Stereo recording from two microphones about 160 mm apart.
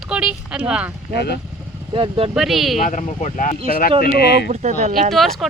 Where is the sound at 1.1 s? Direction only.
90° left.